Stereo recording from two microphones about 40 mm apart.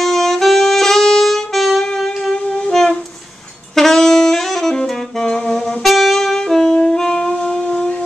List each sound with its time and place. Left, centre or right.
0.0 s saxophone: centre
2.3 s wind instrument: centre
3.7 s saxophone: centre
7.0 s wind instrument: centre